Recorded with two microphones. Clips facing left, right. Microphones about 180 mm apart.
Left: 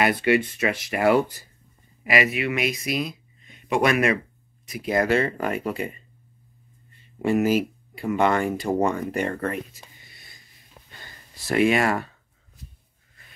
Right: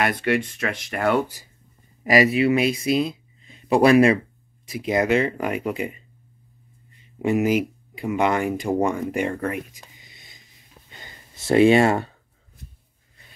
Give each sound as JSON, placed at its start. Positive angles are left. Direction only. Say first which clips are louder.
{"t": 0.0, "sound": "speech", "louder": "left 2 dB", "side_deg": 5}
{"t": 2.0, "sound": "speech", "louder": "right 6 dB", "side_deg": -35}
{"t": 7.2, "sound": "speech", "louder": "right 1 dB", "side_deg": -15}
{"t": 10.0, "sound": "a sound", "louder": "right 1 dB", "side_deg": -20}